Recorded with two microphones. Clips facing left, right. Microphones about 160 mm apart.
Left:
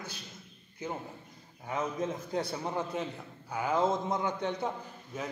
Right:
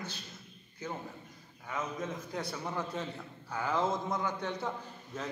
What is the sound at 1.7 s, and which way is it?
A man's voice, 30° left (ahead or behind).